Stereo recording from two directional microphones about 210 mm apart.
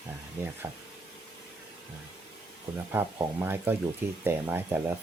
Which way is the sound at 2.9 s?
10° right (ahead or behind).